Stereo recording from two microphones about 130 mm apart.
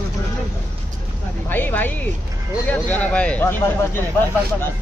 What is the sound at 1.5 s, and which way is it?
Speech, 15° left (ahead or behind).